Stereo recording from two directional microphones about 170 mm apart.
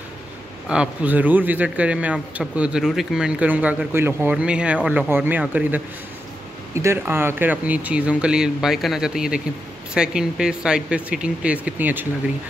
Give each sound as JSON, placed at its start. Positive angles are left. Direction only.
{"t": 0.7, "sound": "speech", "side_deg": -5}
{"t": 6.8, "sound": "speech", "side_deg": -15}